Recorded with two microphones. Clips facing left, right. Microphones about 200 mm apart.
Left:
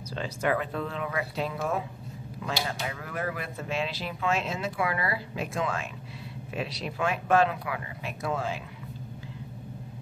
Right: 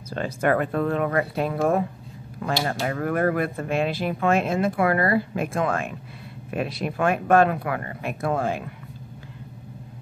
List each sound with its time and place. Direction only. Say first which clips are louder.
0.1 s speech: right 6 dB; 55° right (ahead or behind)